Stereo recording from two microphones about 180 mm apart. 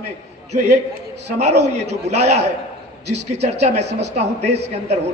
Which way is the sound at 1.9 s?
40° right (ahead or behind).